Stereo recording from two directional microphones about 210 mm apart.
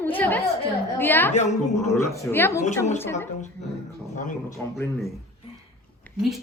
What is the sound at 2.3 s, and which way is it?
Speech, 10° left (ahead or behind).